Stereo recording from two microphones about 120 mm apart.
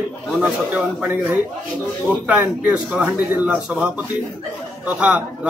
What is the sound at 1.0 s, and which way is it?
A man's voice, 15° right (ahead or behind).